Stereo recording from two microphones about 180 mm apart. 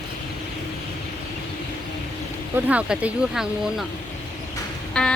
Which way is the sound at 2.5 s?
5° right (ahead or behind).